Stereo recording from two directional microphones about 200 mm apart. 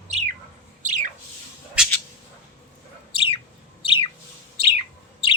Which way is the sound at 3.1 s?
25° left (ahead or behind).